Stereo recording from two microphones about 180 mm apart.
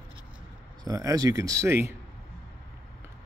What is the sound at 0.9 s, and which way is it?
Speech, 20° right (ahead or behind).